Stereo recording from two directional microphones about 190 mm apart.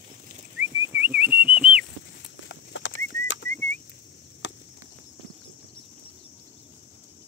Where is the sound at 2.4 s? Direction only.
75° left (ahead or behind).